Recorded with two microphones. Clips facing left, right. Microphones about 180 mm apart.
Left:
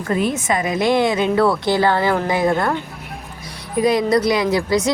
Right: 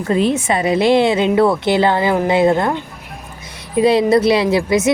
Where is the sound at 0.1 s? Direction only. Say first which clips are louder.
Right 3 dB; 25° right (ahead or behind).